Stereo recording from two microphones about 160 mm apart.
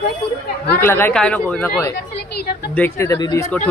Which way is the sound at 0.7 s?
15° left (ahead or behind).